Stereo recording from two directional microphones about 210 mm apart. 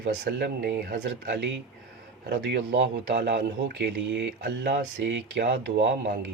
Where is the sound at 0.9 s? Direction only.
55° right (ahead or behind).